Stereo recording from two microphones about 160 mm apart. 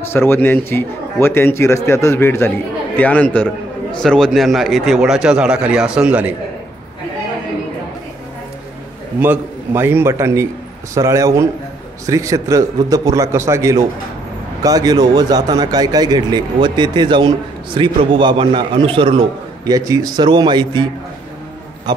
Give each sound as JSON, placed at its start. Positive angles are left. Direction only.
{"t": 0.1, "sound": "a man's voice", "side_deg": 15}
{"t": 9.2, "sound": "a man's voice", "side_deg": -15}